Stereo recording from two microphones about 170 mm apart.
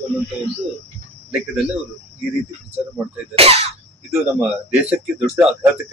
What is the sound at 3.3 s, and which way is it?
Speech, 35° right (ahead or behind).